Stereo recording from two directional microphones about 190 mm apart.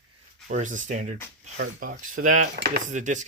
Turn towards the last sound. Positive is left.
turn(degrees=-40)  # may be behind; listen again after turning